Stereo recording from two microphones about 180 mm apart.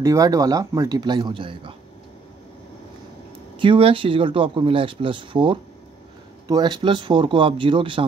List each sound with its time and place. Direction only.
0.0 s speech: 20° right (ahead or behind)
3.5 s speech: 30° right (ahead or behind)